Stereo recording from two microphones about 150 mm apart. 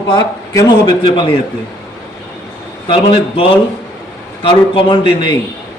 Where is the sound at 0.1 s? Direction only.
30° left (ahead or behind).